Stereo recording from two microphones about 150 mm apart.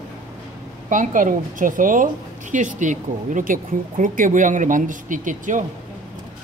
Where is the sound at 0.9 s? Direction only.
60° right (ahead or behind).